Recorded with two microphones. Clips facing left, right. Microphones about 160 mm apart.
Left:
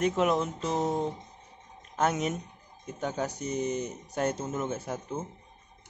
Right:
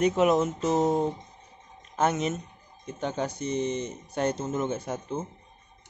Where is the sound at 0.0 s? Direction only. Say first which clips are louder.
Right 4 dB; centre (ahead or behind).